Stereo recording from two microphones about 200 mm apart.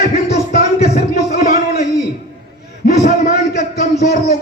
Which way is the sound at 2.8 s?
45° left (ahead or behind).